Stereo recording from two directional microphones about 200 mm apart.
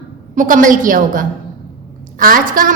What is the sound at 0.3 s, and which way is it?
A woman's voice, 40° right (ahead or behind).